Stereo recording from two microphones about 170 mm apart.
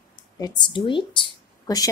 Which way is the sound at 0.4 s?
25° left (ahead or behind).